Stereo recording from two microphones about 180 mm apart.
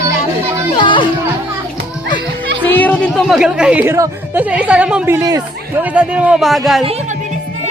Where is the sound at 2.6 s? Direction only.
10° left (ahead or behind); by 5.2 s 5° right (ahead or behind).